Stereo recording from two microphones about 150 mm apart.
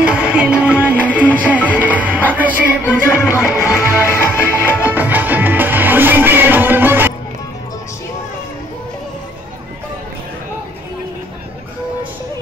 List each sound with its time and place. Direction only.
0.0 s music: 10° right (ahead or behind)
2.8 s music: 15° left (ahead or behind)
4.8 s music: 10° right (ahead or behind)